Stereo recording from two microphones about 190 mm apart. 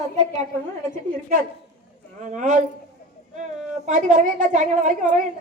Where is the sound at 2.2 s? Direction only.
40° right (ahead or behind).